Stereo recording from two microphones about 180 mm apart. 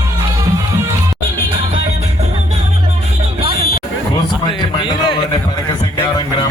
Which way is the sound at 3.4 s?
35° right (ahead or behind).